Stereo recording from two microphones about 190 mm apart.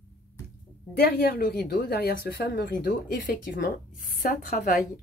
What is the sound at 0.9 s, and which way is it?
Speech, 55° left (ahead or behind).